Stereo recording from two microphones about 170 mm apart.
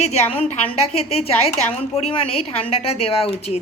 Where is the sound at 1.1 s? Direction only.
35° left (ahead or behind).